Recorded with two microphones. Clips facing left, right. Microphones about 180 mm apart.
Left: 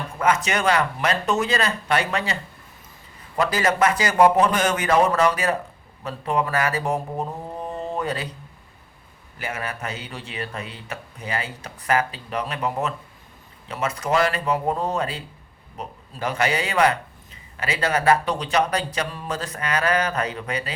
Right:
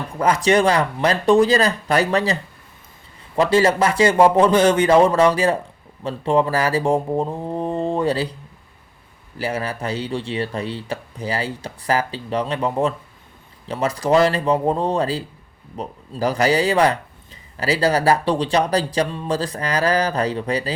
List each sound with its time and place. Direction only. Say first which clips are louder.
0.2 s speech: right 6 dB; 35° right (ahead or behind)
9.4 s speech: right 6 dB; 30° right (ahead or behind)